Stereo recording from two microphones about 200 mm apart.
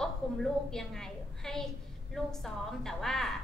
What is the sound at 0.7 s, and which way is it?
A woman's voice, 5° left (ahead or behind).